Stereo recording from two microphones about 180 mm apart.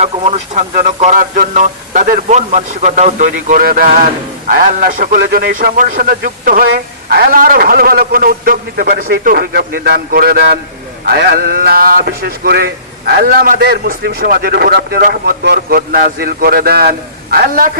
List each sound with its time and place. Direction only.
0.0 s a man's voice: 35° right (ahead or behind); by 17.7 s 55° right (ahead or behind)